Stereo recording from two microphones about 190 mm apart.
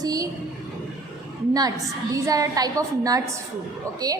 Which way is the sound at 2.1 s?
15° right (ahead or behind).